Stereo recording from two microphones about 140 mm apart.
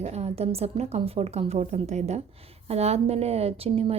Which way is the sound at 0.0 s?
50° right (ahead or behind).